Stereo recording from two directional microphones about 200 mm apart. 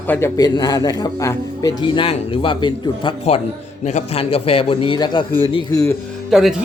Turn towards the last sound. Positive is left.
turn(degrees=0)  # may be behind; listen again after turning